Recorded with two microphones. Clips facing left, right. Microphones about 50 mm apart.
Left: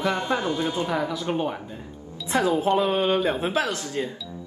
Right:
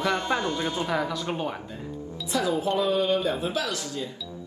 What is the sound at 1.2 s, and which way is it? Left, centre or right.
Speech, left.